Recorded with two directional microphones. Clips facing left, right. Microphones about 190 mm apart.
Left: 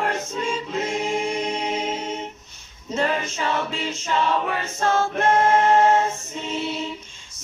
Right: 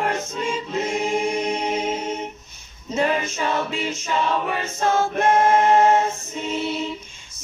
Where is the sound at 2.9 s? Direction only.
15° right (ahead or behind).